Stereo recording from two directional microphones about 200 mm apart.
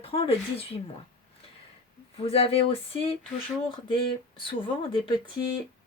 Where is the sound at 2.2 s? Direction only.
30° left (ahead or behind).